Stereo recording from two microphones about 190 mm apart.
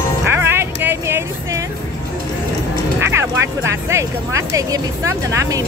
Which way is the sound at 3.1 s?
15° right (ahead or behind).